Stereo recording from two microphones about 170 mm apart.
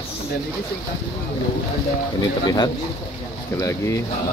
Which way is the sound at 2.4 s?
25° left (ahead or behind).